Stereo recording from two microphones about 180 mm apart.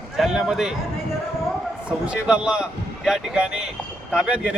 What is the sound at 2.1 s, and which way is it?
A man's voice, 5° right (ahead or behind).